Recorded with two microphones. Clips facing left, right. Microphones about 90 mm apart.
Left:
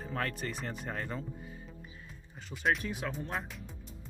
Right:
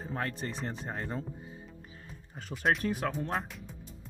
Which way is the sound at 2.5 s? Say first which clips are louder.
Right 2 dB; centre (ahead or behind).